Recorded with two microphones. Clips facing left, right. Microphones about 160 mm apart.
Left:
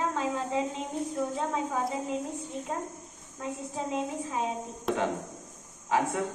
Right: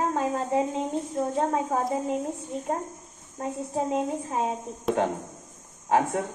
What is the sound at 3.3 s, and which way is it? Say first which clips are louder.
A woman's voice: right 6 dB; 45° right (ahead or behind).